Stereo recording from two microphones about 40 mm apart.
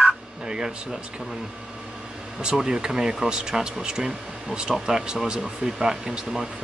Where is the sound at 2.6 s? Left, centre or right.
Centre.